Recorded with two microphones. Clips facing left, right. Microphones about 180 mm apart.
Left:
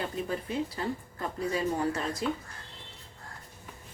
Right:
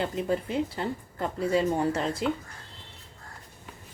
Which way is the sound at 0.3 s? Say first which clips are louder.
Right 5 dB; 25° right (ahead or behind).